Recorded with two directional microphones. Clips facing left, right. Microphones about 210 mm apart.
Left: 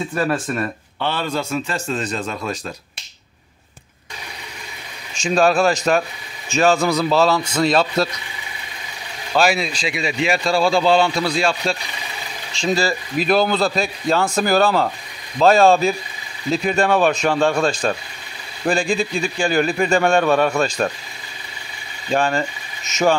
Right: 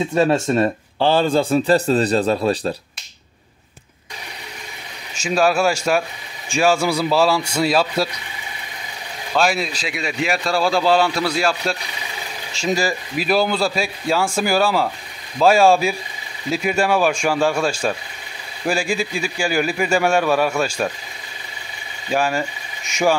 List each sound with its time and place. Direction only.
0.1 s speech: 25° right (ahead or behind)
5.1 s a man's voice: 5° right (ahead or behind)
9.3 s a man's voice: centre (ahead or behind)
22.1 s a man's voice: 10° right (ahead or behind)